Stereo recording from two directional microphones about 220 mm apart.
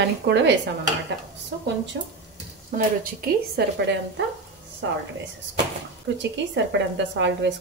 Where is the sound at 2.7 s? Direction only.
40° right (ahead or behind).